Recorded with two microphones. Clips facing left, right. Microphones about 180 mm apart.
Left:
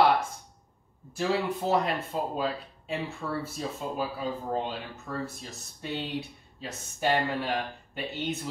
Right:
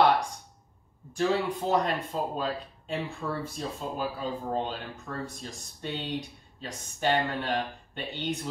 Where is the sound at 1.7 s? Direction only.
5° left (ahead or behind).